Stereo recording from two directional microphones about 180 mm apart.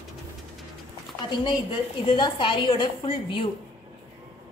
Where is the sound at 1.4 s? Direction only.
25° left (ahead or behind).